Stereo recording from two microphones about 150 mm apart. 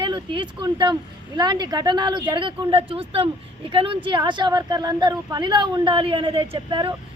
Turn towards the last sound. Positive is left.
turn(degrees=-35)  # may be behind; listen again after turning